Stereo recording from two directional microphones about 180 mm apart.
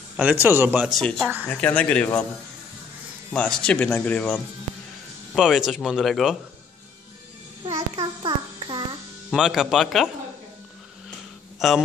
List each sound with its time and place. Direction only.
0.2 s speech: 10° right (ahead or behind); by 2.2 s 5° left (ahead or behind)
3.3 s speech: 5° left (ahead or behind)
7.6 s child singing: 25° right (ahead or behind)
9.3 s speech: centre (ahead or behind)
11.6 s speech: centre (ahead or behind)